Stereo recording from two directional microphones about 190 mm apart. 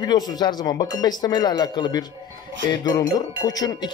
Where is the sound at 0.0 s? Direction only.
20° left (ahead or behind).